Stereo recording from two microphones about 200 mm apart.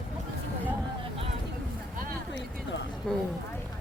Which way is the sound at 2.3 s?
65° left (ahead or behind).